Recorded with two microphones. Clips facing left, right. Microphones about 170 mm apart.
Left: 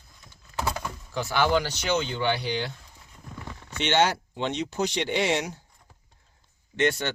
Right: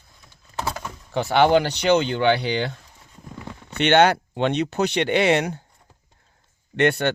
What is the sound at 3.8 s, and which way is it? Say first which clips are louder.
Speech: right 7 dB; 60° right (ahead or behind).